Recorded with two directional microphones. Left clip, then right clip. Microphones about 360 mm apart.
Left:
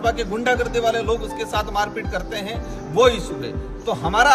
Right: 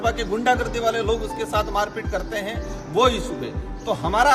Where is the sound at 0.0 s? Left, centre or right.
Centre.